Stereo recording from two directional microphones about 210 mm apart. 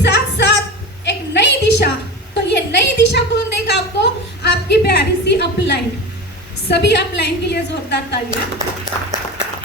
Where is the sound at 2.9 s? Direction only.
50° left (ahead or behind).